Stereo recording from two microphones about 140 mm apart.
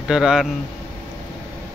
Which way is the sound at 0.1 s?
5° right (ahead or behind).